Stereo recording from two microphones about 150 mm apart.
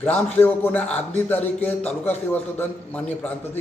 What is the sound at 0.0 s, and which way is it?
A man's voice, 10° left (ahead or behind).